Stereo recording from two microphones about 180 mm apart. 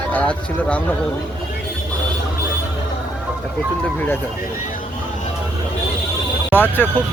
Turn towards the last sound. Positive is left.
turn(degrees=10)  # may be behind; listen again after turning